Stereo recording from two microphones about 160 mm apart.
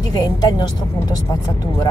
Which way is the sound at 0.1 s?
25° left (ahead or behind).